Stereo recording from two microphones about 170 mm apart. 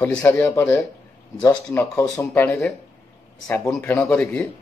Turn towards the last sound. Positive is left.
turn(degrees=15)  # may be behind; listen again after turning